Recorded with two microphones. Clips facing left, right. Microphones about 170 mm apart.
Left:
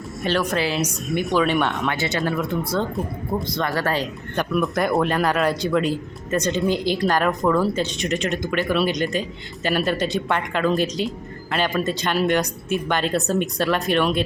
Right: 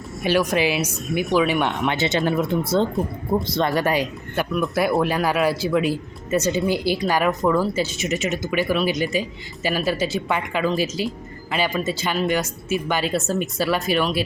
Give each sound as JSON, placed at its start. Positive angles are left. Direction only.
{"t": 0.2, "sound": "speech", "side_deg": -10}
{"t": 3.8, "sound": "speech", "side_deg": -10}